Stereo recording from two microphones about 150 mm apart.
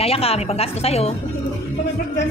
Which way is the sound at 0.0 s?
40° left (ahead or behind).